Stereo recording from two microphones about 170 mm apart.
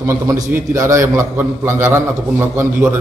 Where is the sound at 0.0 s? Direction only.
15° right (ahead or behind).